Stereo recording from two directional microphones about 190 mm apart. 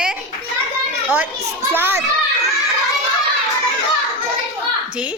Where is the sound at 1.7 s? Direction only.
10° right (ahead or behind).